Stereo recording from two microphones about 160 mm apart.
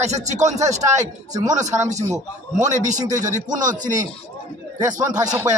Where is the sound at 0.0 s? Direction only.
45° right (ahead or behind).